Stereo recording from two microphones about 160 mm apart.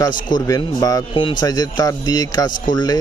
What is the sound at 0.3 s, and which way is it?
A man's voice, 25° left (ahead or behind).